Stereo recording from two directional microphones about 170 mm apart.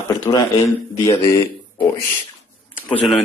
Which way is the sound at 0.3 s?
25° left (ahead or behind).